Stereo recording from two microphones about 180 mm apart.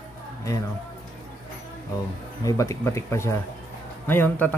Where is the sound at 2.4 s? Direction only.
15° left (ahead or behind).